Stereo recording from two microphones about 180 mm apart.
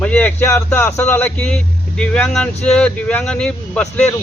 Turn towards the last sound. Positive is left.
turn(degrees=5)  # may be behind; listen again after turning